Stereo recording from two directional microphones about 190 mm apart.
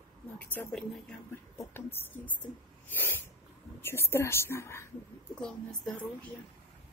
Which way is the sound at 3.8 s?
15° left (ahead or behind).